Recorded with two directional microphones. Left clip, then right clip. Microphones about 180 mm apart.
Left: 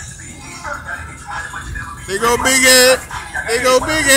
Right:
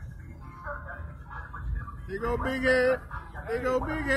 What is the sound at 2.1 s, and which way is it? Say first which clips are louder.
Speech: left 16 dB; 45° left (ahead or behind).